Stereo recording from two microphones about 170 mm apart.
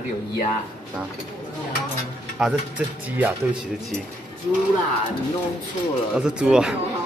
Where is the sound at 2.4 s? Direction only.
10° right (ahead or behind).